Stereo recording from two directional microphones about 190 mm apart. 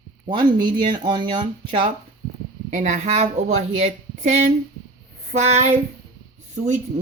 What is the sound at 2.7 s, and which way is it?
Speech, 40° right (ahead or behind).